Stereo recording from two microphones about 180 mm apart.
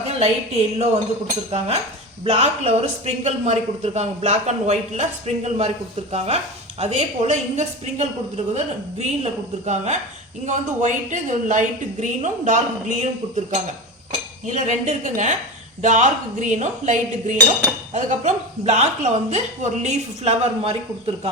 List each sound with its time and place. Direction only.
0.1 s a man's voice: 35° right (ahead or behind)